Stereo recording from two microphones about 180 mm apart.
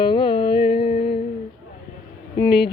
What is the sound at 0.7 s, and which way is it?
Music, 30° left (ahead or behind).